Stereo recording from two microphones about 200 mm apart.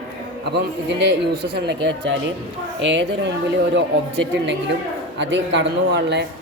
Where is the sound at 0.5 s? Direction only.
60° right (ahead or behind).